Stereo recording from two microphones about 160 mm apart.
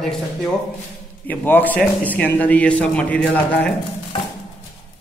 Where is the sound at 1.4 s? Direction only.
10° left (ahead or behind).